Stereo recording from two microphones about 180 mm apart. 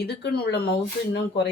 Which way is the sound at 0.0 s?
65° left (ahead or behind).